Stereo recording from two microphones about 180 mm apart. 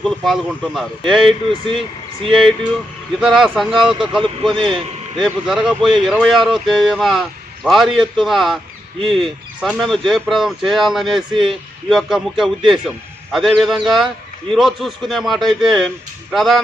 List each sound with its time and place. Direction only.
0.0 s a man's voice: centre (ahead or behind)
1.2 s speech: 30° right (ahead or behind)
2.2 s a man's voice: centre (ahead or behind)
4.2 s speech: 25° right (ahead or behind)
5.2 s a man's voice: 5° right (ahead or behind)